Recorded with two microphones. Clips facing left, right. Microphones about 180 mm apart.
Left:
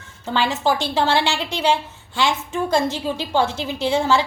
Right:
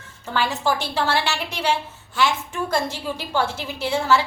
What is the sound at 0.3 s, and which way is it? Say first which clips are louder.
A woman's voice: left 2 dB; 20° left (ahead or behind).